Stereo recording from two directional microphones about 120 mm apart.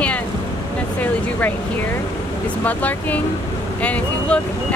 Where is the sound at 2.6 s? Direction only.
15° left (ahead or behind).